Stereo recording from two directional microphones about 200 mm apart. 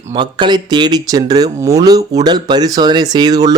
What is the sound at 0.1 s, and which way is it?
Speech, 20° right (ahead or behind).